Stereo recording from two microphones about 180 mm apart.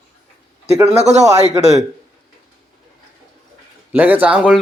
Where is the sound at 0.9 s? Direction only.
35° right (ahead or behind).